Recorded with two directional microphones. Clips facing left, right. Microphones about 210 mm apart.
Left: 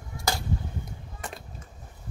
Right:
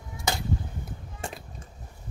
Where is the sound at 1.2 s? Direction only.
25° right (ahead or behind).